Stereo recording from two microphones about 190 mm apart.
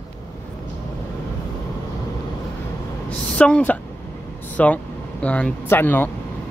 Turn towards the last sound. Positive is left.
turn(degrees=10)  # may be behind; listen again after turning